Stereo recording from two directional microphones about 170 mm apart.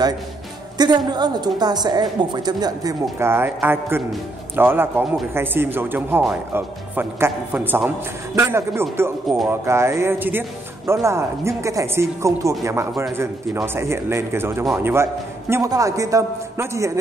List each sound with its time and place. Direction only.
0.7 s a woman's voice: 25° right (ahead or behind)